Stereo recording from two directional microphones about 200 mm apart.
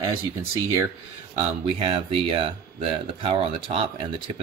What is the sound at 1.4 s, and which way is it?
Speech, 30° right (ahead or behind).